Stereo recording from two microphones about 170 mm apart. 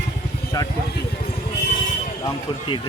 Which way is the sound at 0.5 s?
25° left (ahead or behind).